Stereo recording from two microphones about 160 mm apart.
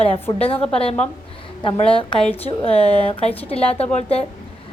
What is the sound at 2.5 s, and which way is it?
A woman's voice, 35° left (ahead or behind).